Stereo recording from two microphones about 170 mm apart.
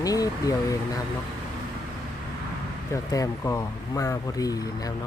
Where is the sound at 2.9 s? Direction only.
20° left (ahead or behind).